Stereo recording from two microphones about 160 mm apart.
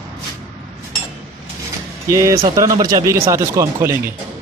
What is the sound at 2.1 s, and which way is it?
Speech, 20° right (ahead or behind).